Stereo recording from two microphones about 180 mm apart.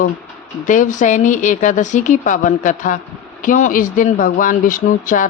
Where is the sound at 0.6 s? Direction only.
45° left (ahead or behind).